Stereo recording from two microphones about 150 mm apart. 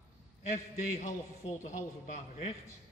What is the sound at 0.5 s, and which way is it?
A man's voice, 55° left (ahead or behind).